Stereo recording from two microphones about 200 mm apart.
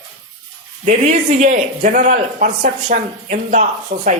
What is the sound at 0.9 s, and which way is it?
Speech, 35° right (ahead or behind).